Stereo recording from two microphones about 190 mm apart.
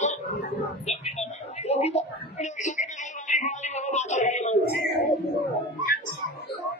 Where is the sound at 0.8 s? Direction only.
35° left (ahead or behind).